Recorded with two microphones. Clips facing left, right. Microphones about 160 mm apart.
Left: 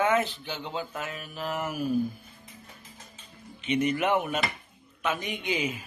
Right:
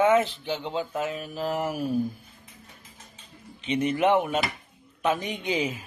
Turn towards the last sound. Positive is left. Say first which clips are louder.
# right 2 dB
turn(degrees=-35)  # may be behind; listen again after turning